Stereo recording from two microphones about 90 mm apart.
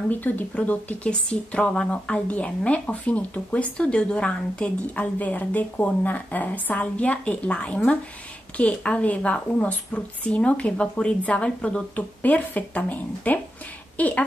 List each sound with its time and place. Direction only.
0.1 s a woman's voice: 20° left (ahead or behind)